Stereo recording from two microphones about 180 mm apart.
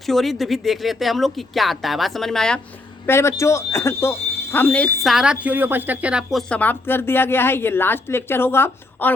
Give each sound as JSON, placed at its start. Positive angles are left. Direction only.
{"t": 0.0, "sound": "speech", "side_deg": 0}
{"t": 3.1, "sound": "a woman's voice", "side_deg": 15}
{"t": 6.5, "sound": "a woman's voice", "side_deg": 10}